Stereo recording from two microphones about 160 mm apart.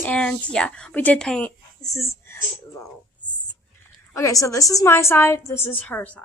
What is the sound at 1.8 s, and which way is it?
Whispering, 20° left (ahead or behind).